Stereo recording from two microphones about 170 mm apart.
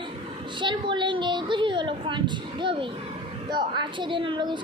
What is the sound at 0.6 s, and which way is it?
A woman's voice, 30° right (ahead or behind).